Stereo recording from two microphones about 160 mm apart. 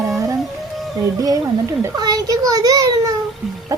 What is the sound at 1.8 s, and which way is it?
A child's voice, 25° right (ahead or behind).